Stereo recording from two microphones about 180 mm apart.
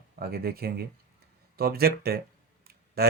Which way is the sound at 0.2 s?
60° right (ahead or behind).